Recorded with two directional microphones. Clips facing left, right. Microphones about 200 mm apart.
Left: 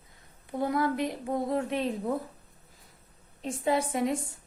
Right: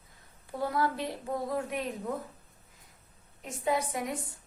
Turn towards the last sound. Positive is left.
turn(degrees=25)  # may be behind; listen again after turning